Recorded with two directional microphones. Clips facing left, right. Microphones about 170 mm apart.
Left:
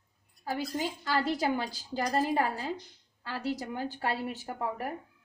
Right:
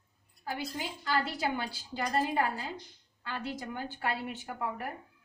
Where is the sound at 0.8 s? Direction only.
40° left (ahead or behind).